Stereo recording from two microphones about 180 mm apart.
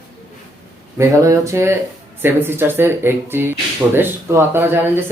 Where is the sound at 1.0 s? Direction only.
15° right (ahead or behind).